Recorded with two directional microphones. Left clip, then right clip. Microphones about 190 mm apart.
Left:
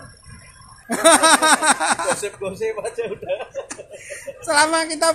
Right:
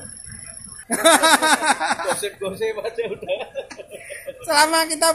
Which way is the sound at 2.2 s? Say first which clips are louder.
Even; 5° left (ahead or behind).